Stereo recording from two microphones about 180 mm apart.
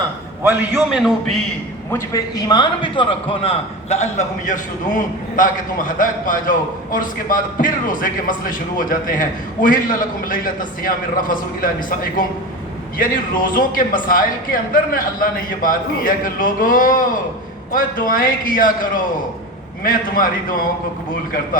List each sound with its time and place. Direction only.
0.4 s a man's voice: 10° right (ahead or behind)
1.9 s a man's voice: 15° left (ahead or behind); by 11.9 s 50° left (ahead or behind)
13.0 s a man's voice: 50° left (ahead or behind)